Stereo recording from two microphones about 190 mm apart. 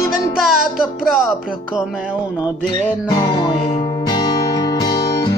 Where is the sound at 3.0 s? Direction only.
20° left (ahead or behind).